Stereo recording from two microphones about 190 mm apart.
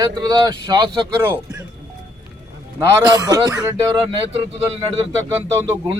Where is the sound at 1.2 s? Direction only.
10° right (ahead or behind).